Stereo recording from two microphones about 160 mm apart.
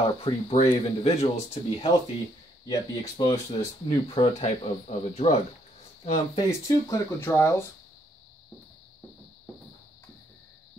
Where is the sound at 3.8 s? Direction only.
35° left (ahead or behind).